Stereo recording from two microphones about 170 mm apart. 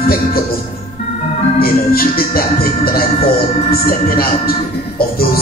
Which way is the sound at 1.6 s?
60° left (ahead or behind).